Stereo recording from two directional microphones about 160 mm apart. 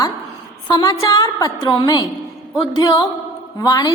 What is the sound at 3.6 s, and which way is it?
Speech, 25° left (ahead or behind).